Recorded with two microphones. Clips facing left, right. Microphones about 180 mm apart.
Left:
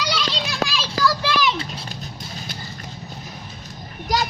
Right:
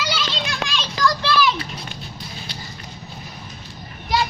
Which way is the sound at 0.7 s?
5° left (ahead or behind).